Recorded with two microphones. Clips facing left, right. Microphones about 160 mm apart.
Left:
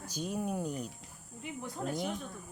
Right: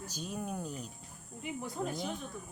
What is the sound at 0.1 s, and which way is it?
Speech, 10° left (ahead or behind).